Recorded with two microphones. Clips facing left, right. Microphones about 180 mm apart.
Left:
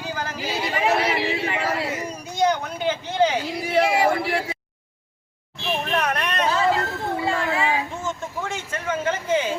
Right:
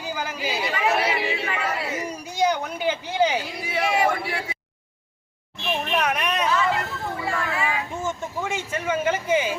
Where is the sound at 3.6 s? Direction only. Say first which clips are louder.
Left 4 dB; 30° left (ahead or behind).